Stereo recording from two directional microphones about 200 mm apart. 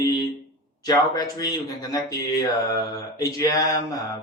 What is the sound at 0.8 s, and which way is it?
Mantra, 20° left (ahead or behind).